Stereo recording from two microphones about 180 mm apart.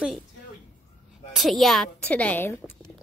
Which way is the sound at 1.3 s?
Centre (ahead or behind).